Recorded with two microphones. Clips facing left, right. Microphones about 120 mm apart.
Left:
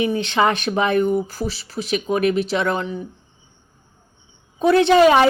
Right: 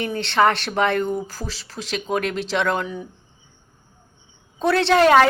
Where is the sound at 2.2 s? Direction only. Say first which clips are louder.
Left 7 dB; 90° right.